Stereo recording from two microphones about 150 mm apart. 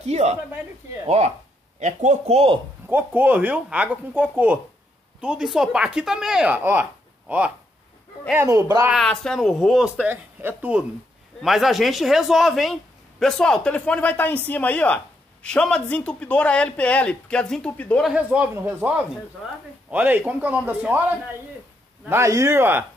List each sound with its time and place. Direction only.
0.0 s speech: 45° right (ahead or behind)
2.9 s speech: 10° right (ahead or behind)
8.9 s speech: 5° left (ahead or behind)
10.0 s a man's voice: 10° right (ahead or behind); by 18.0 s 10° left (ahead or behind)
18.0 s speech: 5° right (ahead or behind)